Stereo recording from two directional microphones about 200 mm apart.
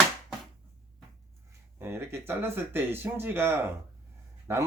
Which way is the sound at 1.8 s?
10° right (ahead or behind).